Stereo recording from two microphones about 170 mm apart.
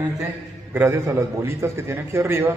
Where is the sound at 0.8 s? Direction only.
15° right (ahead or behind).